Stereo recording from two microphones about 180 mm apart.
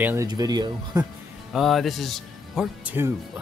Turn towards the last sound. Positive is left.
turn(degrees=-10)  # may be behind; listen again after turning